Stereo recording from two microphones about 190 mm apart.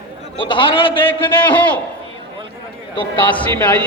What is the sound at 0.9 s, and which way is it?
Speech, 10° left (ahead or behind).